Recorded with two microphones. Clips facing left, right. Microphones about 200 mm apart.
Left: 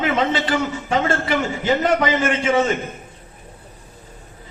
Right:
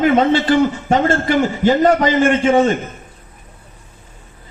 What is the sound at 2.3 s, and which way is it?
Speech, 40° right (ahead or behind).